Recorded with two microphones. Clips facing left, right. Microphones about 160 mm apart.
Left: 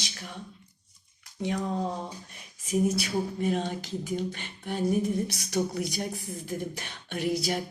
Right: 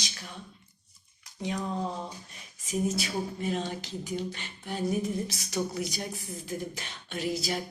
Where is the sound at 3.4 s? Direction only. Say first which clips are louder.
Left 3 dB; 50° left (ahead or behind).